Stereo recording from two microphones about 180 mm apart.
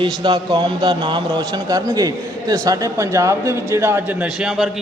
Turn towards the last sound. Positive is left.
turn(degrees=0)  # may be behind; listen again after turning